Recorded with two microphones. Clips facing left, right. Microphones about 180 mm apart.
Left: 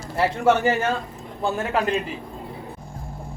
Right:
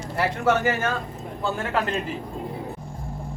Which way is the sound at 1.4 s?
20° left (ahead or behind).